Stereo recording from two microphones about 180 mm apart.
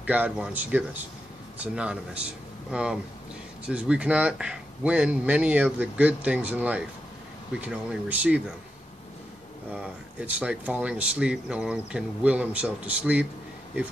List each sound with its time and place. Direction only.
0.0 s speech: 10° right (ahead or behind)
9.8 s speech: 5° right (ahead or behind)